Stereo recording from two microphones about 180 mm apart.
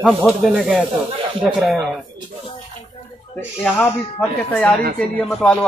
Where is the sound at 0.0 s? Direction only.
Centre (ahead or behind).